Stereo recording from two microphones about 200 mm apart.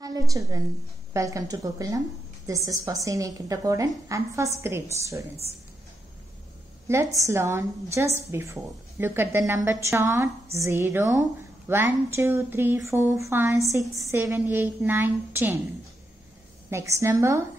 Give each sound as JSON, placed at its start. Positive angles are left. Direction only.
{"t": 0.0, "sound": "a sound", "side_deg": -15}
{"t": 1.1, "sound": "a woman's voice", "side_deg": -15}
{"t": 6.9, "sound": "a woman's voice", "side_deg": -15}
{"t": 16.7, "sound": "a woman's voice", "side_deg": -15}